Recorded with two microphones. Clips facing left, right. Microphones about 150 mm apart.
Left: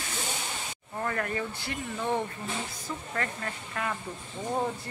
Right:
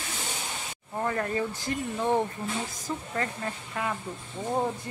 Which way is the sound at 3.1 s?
15° right (ahead or behind).